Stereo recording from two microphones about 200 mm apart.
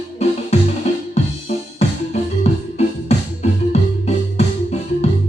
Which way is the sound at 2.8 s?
35° left (ahead or behind).